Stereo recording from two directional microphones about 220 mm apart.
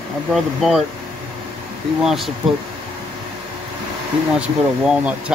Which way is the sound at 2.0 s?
Centre (ahead or behind).